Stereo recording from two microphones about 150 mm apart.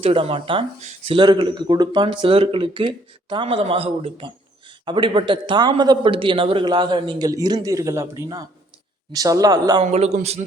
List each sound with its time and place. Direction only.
0.0 s a man's voice: 40° right (ahead or behind); by 9.8 s 25° right (ahead or behind)
9.8 s a man's voice: 50° right (ahead or behind)